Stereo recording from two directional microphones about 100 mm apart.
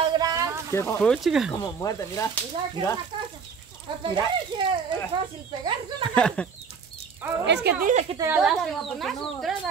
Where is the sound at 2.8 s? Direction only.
50° right (ahead or behind).